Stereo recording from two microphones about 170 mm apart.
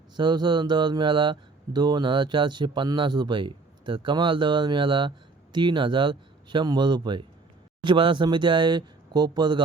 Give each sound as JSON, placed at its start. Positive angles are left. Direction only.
{"t": 0.2, "sound": "speech", "side_deg": -25}